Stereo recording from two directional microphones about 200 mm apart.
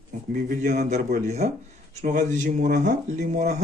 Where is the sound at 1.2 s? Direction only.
35° right (ahead or behind).